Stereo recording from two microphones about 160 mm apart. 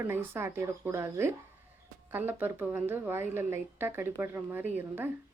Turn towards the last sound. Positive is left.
turn(degrees=-10)  # may be behind; listen again after turning